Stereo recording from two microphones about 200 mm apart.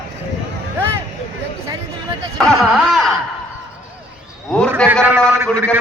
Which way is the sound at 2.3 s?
Centre (ahead or behind).